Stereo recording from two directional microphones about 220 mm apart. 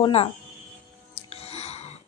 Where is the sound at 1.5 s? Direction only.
30° left (ahead or behind).